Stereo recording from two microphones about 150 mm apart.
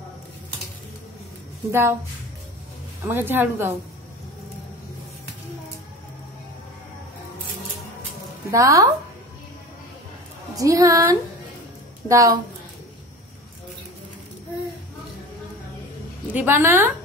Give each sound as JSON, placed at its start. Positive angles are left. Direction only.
{"t": 1.7, "sound": "a woman's voice", "side_deg": -15}
{"t": 3.1, "sound": "a woman's voice", "side_deg": -15}
{"t": 8.5, "sound": "a woman's voice", "side_deg": -20}
{"t": 10.5, "sound": "a woman's voice", "side_deg": -20}
{"t": 16.3, "sound": "a woman's voice", "side_deg": -15}